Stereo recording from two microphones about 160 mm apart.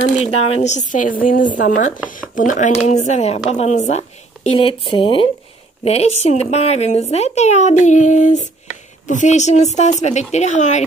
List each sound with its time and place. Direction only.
0.2 s speech: 40° left (ahead or behind)